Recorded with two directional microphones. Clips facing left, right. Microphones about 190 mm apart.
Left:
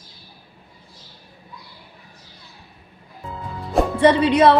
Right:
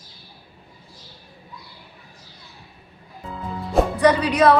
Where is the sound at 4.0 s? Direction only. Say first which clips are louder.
Left 4 dB; 25° left (ahead or behind).